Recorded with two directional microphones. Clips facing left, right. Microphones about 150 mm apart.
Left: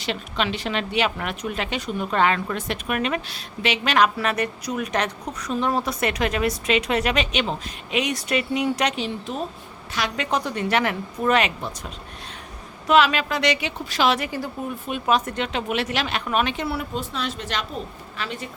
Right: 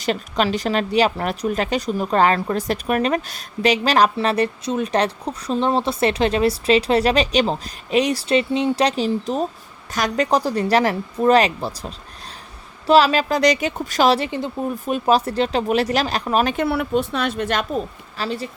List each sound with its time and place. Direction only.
0.0 s speech: 40° right (ahead or behind)
14.3 s speech: 25° right (ahead or behind)
14.8 s speech: 35° right (ahead or behind)
16.6 s a woman's voice: 60° right (ahead or behind)
18.2 s speech: 35° right (ahead or behind)